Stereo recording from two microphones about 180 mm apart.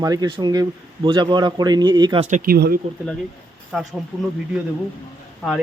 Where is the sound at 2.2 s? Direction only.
50° right (ahead or behind).